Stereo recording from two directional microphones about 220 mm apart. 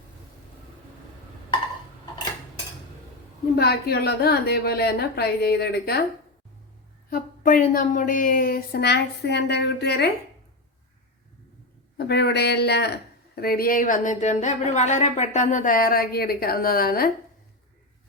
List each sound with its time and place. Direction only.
3.5 s a woman's voice: 45° left (ahead or behind)
7.1 s speech: 40° left (ahead or behind)
11.9 s a woman's voice: 50° left (ahead or behind)